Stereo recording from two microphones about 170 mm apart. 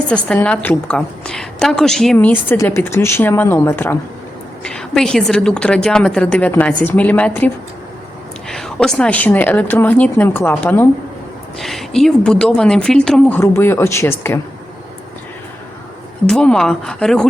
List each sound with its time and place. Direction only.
0.1 s speech: 5° left (ahead or behind)
2.5 s a woman's voice: 15° left (ahead or behind)
4.6 s a woman's voice: 5° left (ahead or behind)
16.2 s speech: 5° left (ahead or behind)